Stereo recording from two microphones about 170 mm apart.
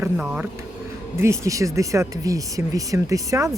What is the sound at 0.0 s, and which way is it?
Speech, 5° right (ahead or behind).